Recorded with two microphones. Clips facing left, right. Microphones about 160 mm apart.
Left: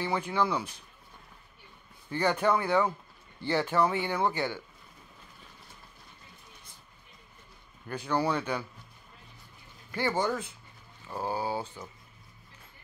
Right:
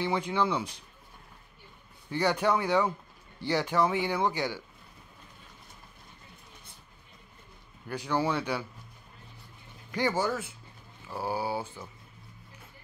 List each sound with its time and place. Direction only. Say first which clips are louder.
0.0 s speech: right 1 dB; 15° right (ahead or behind)
2.0 s speech: even; 10° right (ahead or behind)
7.9 s speech: even; 15° right (ahead or behind)
9.8 s speech: right 1 dB; 10° right (ahead or behind)